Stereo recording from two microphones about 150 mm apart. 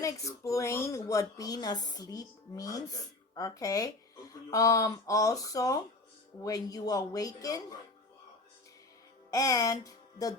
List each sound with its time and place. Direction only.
0.0 s speech: 20° left (ahead or behind)
9.3 s music: 25° left (ahead or behind)